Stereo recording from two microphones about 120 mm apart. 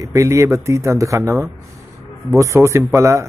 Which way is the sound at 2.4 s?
25° right (ahead or behind).